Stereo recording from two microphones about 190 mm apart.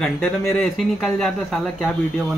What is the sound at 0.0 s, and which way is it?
Speech, 5° left (ahead or behind).